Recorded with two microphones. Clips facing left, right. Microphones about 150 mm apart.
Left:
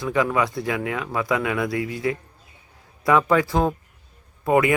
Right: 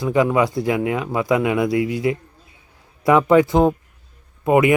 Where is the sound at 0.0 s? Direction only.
25° right (ahead or behind).